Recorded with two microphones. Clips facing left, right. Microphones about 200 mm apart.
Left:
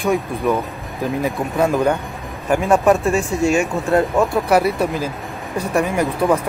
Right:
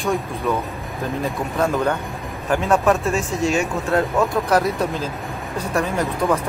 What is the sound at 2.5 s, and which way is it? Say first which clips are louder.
Speech: left 3 dB; 10° left (ahead or behind).